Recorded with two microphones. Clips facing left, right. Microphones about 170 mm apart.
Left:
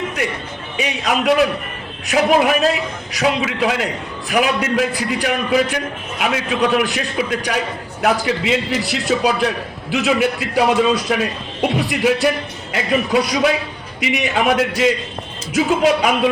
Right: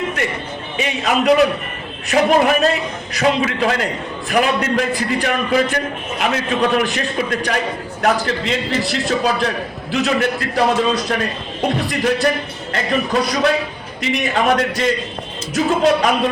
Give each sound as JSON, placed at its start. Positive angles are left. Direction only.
{"t": 0.8, "sound": "a man's voice", "side_deg": 0}